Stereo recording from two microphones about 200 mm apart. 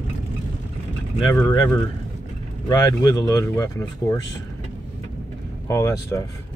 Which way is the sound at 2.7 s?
20° left (ahead or behind).